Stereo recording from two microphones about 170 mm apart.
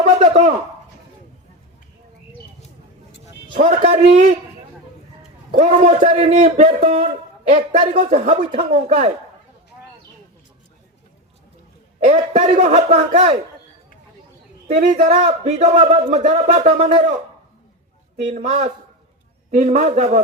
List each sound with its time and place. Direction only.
0.0 s a sound: 40° right (ahead or behind)
3.5 s speech: 40° right (ahead or behind)
5.5 s a man's voice: 40° right (ahead or behind)
11.9 s a man's voice: 45° right (ahead or behind)
14.7 s speech: 45° right (ahead or behind)
18.3 s a man's voice: 40° right (ahead or behind)